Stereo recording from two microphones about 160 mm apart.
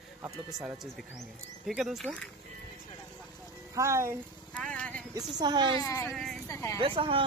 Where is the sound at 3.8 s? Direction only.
15° right (ahead or behind).